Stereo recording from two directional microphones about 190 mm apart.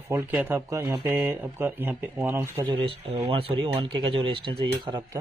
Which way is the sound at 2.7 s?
30° right (ahead or behind).